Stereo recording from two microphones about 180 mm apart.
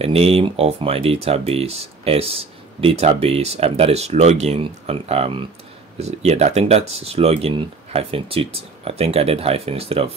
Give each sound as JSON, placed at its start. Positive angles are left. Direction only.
{"t": 0.0, "sound": "speech", "side_deg": -35}